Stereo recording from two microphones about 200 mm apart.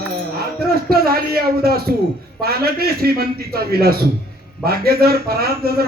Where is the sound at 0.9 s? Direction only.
50° right (ahead or behind).